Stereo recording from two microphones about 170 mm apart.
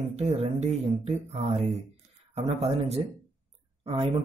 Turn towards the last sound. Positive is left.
turn(degrees=-30)  # may be behind; listen again after turning